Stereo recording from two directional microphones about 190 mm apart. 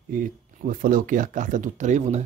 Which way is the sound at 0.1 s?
45° right (ahead or behind).